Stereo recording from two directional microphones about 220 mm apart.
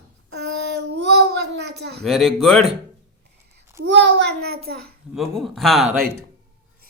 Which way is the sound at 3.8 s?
55° right (ahead or behind).